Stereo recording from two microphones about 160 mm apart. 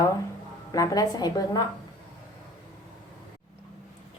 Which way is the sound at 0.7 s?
25° left (ahead or behind).